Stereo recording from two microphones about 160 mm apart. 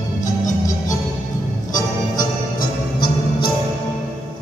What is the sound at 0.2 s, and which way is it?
Music, 50° left (ahead or behind).